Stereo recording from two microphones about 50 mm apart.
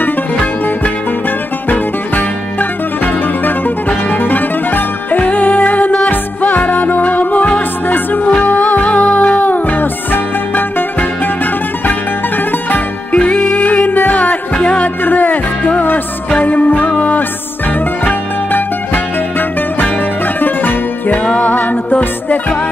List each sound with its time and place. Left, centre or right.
1.7 s music: left
13.1 s music: left
13.4 s music: left
15.0 s music: left
16.3 s music: left
20.3 s music: left